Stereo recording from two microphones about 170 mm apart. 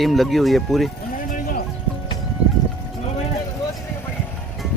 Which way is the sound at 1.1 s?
55° left (ahead or behind).